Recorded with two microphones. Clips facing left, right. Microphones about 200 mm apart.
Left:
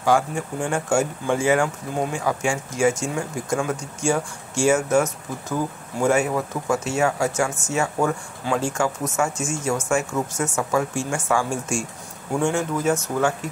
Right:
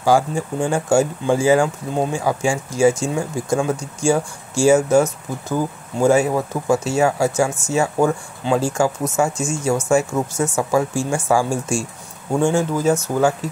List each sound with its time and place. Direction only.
0.0 s speech: 30° right (ahead or behind)